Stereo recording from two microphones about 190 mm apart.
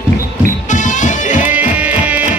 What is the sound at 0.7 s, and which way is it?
Music, 40° left (ahead or behind).